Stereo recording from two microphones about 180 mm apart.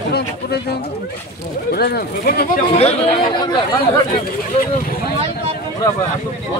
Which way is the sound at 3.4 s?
25° left (ahead or behind).